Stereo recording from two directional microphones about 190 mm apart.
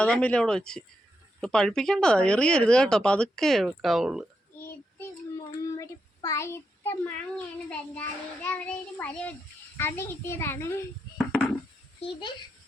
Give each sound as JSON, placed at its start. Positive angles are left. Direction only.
{"t": 0.0, "sound": "speech", "side_deg": 5}
{"t": 5.5, "sound": "child singing", "side_deg": 20}
{"t": 11.2, "sound": "speech", "side_deg": 5}
{"t": 11.9, "sound": "a child's voice", "side_deg": 25}